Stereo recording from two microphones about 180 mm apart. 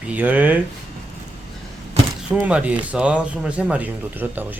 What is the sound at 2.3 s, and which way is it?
Speech, 5° right (ahead or behind).